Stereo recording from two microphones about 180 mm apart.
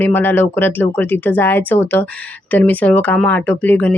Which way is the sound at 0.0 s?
10° left (ahead or behind).